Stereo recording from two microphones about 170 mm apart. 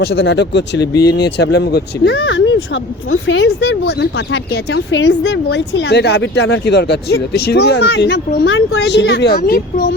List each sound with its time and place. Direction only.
0.0 s speech: 80° left
1.1 s speech: 75° left (ahead or behind); by 9.8 s 60° left (ahead or behind)